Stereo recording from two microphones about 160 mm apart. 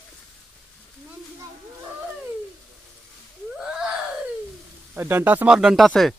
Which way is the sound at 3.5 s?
5° right (ahead or behind).